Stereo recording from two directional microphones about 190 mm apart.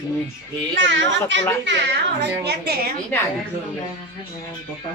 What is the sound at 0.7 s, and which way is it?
Speech, 75° right (ahead or behind).